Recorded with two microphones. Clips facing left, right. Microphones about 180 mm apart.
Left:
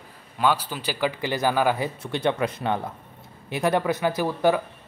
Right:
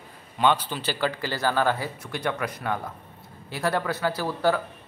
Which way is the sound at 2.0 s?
25° left (ahead or behind).